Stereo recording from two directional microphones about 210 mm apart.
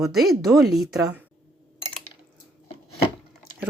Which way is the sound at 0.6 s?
50° right (ahead or behind).